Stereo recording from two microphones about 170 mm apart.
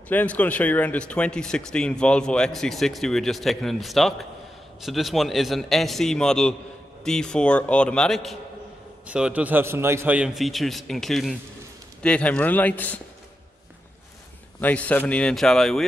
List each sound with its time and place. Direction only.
0.1 s a man's voice: 10° left (ahead or behind)
14.6 s a man's voice: 10° left (ahead or behind)